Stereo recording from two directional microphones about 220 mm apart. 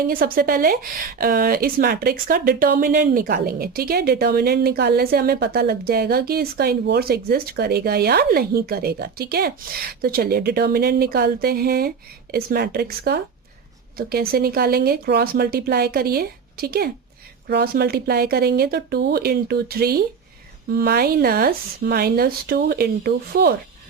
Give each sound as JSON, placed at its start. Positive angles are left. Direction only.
{"t": 0.0, "sound": "a woman's voice", "side_deg": -40}